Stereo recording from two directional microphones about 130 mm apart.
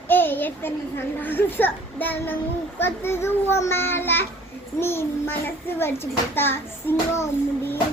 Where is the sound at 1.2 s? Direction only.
15° left (ahead or behind).